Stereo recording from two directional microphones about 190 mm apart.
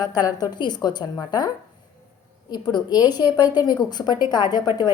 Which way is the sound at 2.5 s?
20° left (ahead or behind).